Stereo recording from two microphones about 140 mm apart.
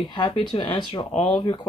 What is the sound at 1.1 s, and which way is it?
Speech, 50° left (ahead or behind).